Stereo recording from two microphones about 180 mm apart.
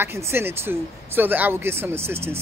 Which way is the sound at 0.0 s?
15° right (ahead or behind).